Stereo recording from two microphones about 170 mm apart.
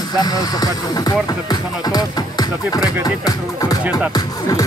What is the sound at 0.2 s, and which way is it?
Speech, 20° left (ahead or behind).